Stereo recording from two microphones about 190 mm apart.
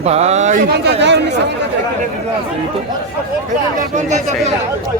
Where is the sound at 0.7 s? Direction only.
65° right (ahead or behind).